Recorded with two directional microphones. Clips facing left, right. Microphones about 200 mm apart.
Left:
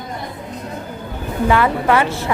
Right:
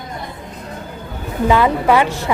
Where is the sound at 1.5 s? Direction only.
15° right (ahead or behind).